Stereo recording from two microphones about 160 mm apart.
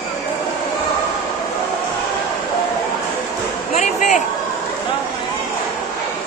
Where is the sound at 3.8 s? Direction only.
50° left (ahead or behind).